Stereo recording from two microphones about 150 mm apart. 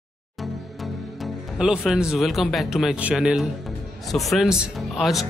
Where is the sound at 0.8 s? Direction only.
Centre (ahead or behind).